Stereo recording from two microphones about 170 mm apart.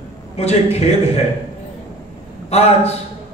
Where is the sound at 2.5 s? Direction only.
40° left (ahead or behind).